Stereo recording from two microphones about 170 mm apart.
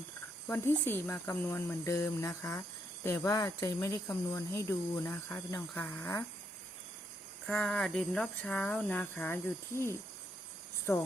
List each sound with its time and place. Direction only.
0.4 s speech: 10° left (ahead or behind)
7.4 s speech: 5° left (ahead or behind)